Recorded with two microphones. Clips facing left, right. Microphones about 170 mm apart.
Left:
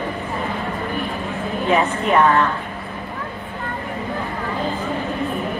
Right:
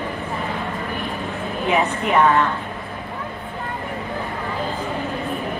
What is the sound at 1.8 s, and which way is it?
Speech, centre (ahead or behind).